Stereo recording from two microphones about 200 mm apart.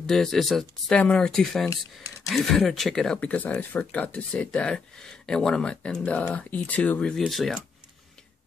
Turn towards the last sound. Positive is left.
turn(degrees=0)  # may be behind; listen again after turning